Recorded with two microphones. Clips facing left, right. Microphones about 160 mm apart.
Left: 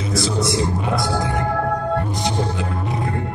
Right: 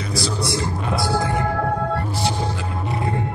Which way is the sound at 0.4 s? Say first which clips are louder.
Left 4 dB; centre (ahead or behind).